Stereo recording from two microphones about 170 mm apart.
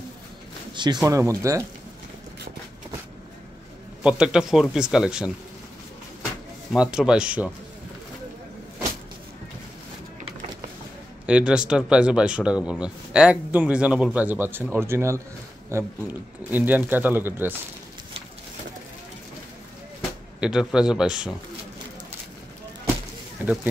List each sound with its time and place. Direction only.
1.0 s speech: 20° right (ahead or behind)
4.0 s speech: 5° right (ahead or behind)
6.7 s speech: 5° right (ahead or behind)
11.2 s speech: 5° right (ahead or behind)
20.3 s speech: 5° right (ahead or behind)
23.4 s speech: 10° right (ahead or behind)